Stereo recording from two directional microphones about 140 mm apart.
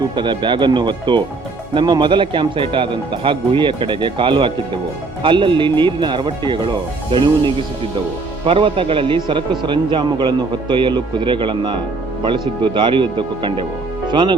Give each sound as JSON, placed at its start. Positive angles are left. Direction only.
{"t": 0.2, "sound": "a man's voice", "side_deg": -35}